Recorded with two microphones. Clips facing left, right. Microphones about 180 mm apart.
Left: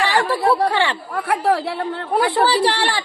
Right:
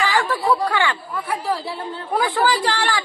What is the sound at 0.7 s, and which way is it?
Speech, 35° left (ahead or behind).